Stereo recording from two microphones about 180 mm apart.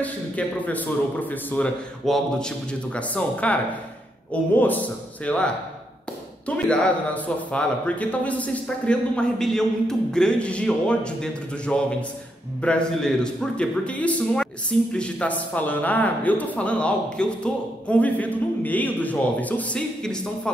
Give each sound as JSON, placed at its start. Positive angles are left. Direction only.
{"t": 0.0, "sound": "a man's voice", "side_deg": 10}